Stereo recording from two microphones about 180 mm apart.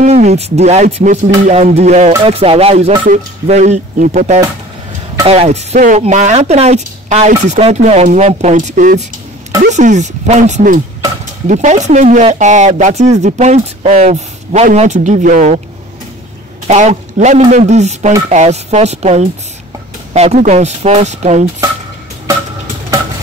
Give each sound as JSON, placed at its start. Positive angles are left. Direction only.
{"t": 0.0, "sound": "speech", "side_deg": -40}
{"t": 16.6, "sound": "speech", "side_deg": -40}